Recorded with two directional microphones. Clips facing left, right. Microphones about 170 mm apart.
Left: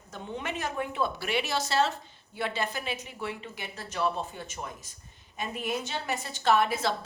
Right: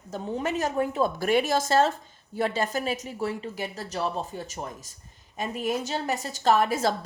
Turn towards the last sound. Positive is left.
turn(degrees=-45)  # may be behind; listen again after turning